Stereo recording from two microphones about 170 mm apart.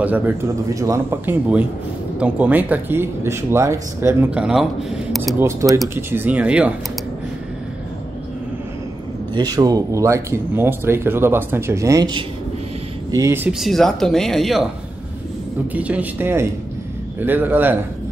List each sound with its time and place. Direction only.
0.7 s speech: 15° right (ahead or behind)
5.4 s speech: 20° right (ahead or behind)
9.3 s speech: 25° right (ahead or behind)
13.6 s speech: centre (ahead or behind)
15.7 s speech: 10° right (ahead or behind)